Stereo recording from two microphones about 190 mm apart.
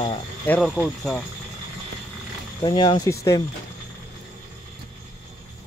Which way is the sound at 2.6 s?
25° left (ahead or behind).